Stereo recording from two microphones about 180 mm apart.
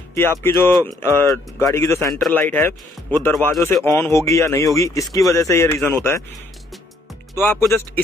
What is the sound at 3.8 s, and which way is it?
Speech, 15° left (ahead or behind).